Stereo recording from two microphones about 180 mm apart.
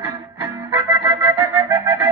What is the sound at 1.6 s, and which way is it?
Music, 15° right (ahead or behind).